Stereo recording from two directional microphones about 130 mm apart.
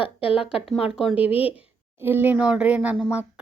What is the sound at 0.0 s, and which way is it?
Speech, 45° left (ahead or behind).